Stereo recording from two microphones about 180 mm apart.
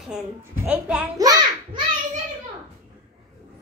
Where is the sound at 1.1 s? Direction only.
20° right (ahead or behind).